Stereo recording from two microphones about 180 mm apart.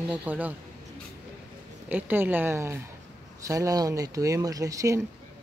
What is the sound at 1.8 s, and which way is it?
Speech, 10° right (ahead or behind).